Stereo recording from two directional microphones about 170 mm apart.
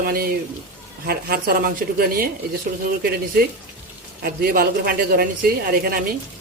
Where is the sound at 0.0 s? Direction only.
65° right (ahead or behind).